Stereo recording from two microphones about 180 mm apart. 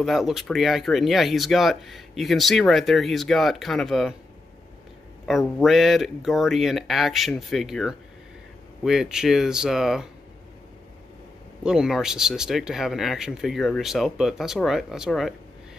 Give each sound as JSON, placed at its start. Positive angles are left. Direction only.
{"t": 0.0, "sound": "speech", "side_deg": 0}
{"t": 5.6, "sound": "speech", "side_deg": 0}
{"t": 11.6, "sound": "speech", "side_deg": -5}